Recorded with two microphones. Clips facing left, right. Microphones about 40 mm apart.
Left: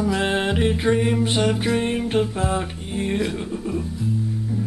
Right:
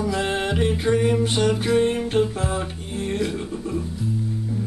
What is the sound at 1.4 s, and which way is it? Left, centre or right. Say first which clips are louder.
Music: right 1 dB; left.